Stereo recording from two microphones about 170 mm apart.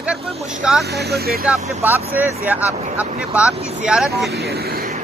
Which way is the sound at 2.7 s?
35° right (ahead or behind).